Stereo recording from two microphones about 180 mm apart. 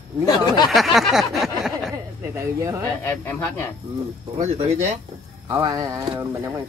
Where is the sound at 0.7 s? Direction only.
Centre (ahead or behind).